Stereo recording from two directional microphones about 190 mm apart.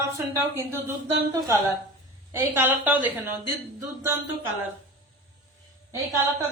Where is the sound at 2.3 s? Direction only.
10° right (ahead or behind).